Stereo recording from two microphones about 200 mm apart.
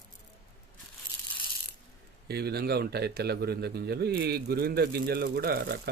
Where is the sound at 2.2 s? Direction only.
55° right (ahead or behind).